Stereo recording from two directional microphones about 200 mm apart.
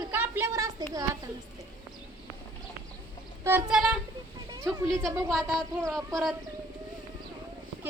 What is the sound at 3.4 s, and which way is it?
A woman's voice, 5° right (ahead or behind).